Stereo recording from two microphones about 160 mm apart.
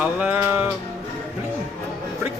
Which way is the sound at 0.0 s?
10° right (ahead or behind).